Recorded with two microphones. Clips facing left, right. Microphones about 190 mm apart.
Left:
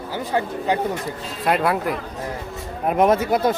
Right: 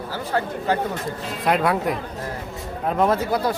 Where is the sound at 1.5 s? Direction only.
5° left (ahead or behind).